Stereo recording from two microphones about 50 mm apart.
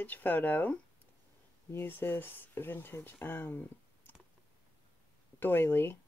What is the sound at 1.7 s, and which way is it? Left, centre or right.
Speech, left.